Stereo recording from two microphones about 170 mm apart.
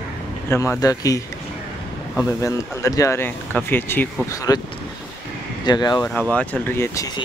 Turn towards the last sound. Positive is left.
turn(degrees=15)  # may be behind; listen again after turning